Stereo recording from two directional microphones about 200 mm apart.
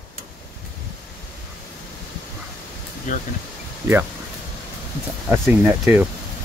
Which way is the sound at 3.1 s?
40° left (ahead or behind).